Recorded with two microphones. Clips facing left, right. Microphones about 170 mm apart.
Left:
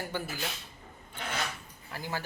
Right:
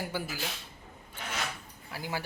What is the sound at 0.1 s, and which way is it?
Speech, 10° right (ahead or behind).